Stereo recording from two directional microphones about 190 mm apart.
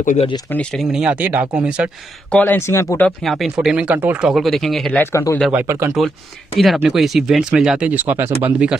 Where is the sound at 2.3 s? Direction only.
10° left (ahead or behind).